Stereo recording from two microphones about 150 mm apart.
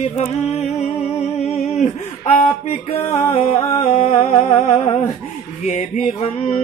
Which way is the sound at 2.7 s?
45° left (ahead or behind).